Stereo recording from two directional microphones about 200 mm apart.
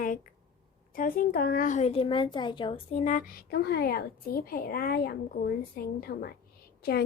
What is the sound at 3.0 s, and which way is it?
Speech, 45° left (ahead or behind).